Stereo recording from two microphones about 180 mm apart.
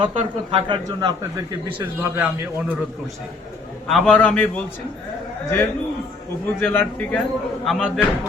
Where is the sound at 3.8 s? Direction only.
Centre (ahead or behind).